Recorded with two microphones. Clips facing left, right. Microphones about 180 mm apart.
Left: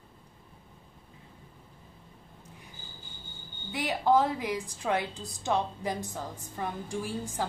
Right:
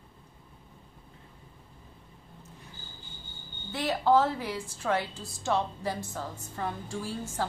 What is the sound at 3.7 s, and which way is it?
A woman's voice, 15° left (ahead or behind).